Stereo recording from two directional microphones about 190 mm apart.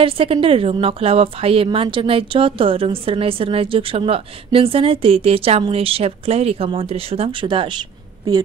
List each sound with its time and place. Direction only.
0.0 s a woman's voice: 30° right (ahead or behind)